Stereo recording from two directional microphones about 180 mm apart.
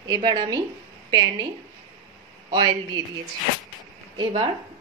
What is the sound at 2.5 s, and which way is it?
Speech, 20° right (ahead or behind).